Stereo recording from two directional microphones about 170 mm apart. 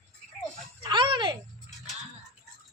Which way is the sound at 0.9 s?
25° right (ahead or behind).